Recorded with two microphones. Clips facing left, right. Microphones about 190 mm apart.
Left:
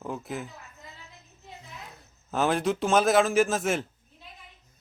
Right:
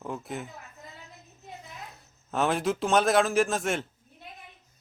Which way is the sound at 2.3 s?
Centre (ahead or behind).